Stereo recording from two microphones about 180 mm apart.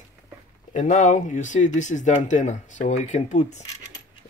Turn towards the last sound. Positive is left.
turn(degrees=40)  # may be behind; listen again after turning